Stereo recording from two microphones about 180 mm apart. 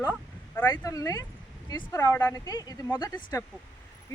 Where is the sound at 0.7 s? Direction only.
20° left (ahead or behind).